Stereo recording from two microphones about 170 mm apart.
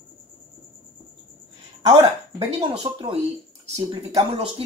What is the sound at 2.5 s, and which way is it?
Speech, 30° right (ahead or behind).